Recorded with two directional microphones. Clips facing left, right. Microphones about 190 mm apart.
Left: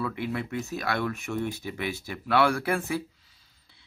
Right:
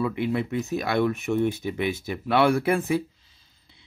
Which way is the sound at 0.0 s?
20° right (ahead or behind).